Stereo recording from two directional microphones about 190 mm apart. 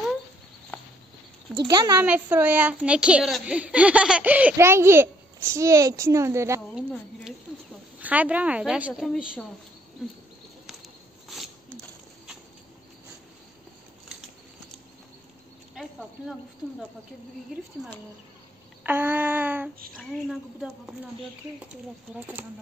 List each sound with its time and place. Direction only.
1.5 s speech: 25° right (ahead or behind)
2.0 s a child's voice: 10° right (ahead or behind)
6.7 s a woman's voice: centre (ahead or behind)
11.2 s a sound: centre (ahead or behind)
15.7 s a sound: centre (ahead or behind)
18.9 s a child's voice: 10° right (ahead or behind)